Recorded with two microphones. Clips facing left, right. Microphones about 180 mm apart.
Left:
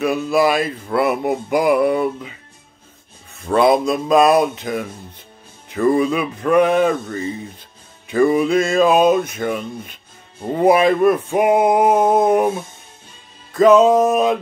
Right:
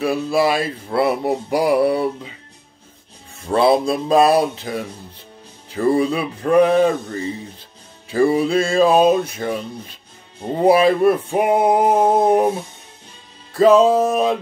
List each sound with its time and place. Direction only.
0.0 s music: 30° right (ahead or behind)
3.4 s music: 30° right (ahead or behind)